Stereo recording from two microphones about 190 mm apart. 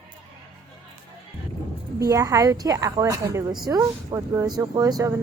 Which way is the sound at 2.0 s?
15° right (ahead or behind).